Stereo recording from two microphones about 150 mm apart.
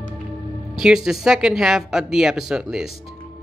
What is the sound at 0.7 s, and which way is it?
Speech, 5° right (ahead or behind).